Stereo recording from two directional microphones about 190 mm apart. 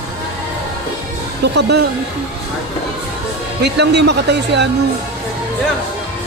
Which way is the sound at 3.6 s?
65° right (ahead or behind).